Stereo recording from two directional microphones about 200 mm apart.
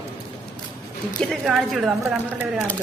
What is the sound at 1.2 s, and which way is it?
A woman's voice, centre (ahead or behind).